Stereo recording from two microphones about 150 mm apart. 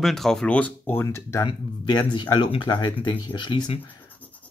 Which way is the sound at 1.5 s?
30° left (ahead or behind).